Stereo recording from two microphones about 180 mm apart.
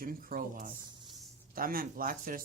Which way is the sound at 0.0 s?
50° right (ahead or behind).